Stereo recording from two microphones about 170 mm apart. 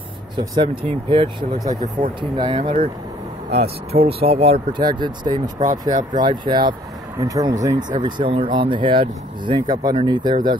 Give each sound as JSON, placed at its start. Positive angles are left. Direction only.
{"t": 0.4, "sound": "speech", "side_deg": -30}
{"t": 2.0, "sound": "speech", "side_deg": -50}
{"t": 2.3, "sound": "speech", "side_deg": -30}